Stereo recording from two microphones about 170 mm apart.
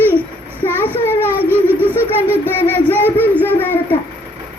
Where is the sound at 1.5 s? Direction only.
10° right (ahead or behind).